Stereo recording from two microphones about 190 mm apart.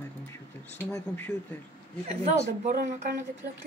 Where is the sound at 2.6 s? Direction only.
40° right (ahead or behind).